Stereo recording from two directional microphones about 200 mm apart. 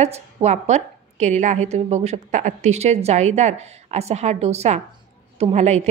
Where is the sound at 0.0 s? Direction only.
35° right (ahead or behind).